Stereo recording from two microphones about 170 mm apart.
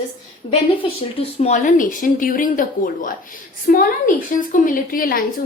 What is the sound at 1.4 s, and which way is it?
A woman's voice, 45° left (ahead or behind).